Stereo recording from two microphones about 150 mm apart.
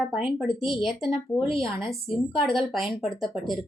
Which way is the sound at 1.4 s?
35° left (ahead or behind).